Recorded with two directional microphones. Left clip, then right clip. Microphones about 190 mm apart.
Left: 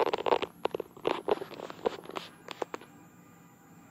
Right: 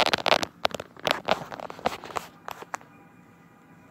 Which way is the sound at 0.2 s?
25° right (ahead or behind).